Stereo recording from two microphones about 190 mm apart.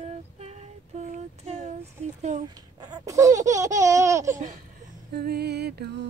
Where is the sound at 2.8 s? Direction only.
20° right (ahead or behind).